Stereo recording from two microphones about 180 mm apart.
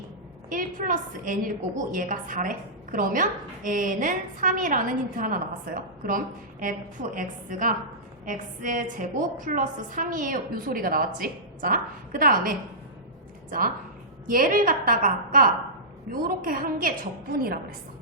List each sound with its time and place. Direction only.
0.5 s a woman's voice: 50° right (ahead or behind)
14.3 s a woman's voice: 50° right (ahead or behind)